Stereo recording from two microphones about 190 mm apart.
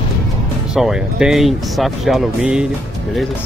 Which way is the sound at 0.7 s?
5° right (ahead or behind).